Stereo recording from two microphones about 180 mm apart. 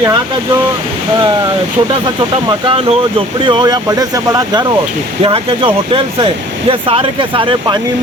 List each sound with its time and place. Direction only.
2.5 s speech: 30° right (ahead or behind)